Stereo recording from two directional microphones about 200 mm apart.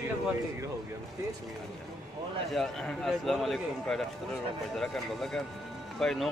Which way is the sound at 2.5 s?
Centre (ahead or behind).